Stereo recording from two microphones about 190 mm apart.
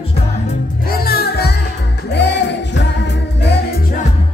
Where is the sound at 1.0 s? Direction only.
55° left (ahead or behind).